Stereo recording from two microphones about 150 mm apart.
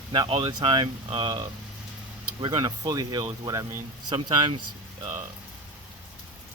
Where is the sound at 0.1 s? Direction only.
35° right (ahead or behind).